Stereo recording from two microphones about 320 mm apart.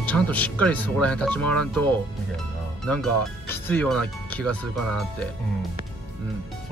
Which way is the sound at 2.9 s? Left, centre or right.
Centre.